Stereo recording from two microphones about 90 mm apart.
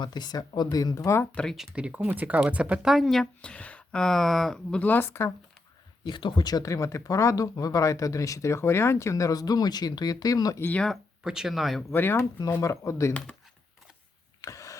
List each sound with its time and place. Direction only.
0.0 s speech: 50° left (ahead or behind); by 1.3 s 30° left (ahead or behind)
1.5 s speech: 10° right (ahead or behind); by 4.8 s 5° left (ahead or behind)
4.8 s a woman's voice: 20° left (ahead or behind)
6.1 s speech: 60° left (ahead or behind); by 10.6 s 45° left (ahead or behind)
10.6 s speech: 15° left (ahead or behind)
11.2 s speech: 5° right (ahead or behind)
11.9 s a woman's voice: 25° left (ahead or behind)
14.4 s a sound: 40° left (ahead or behind)